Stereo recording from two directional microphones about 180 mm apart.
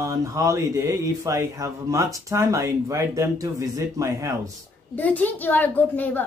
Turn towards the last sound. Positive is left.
turn(degrees=10)  # may be behind; listen again after turning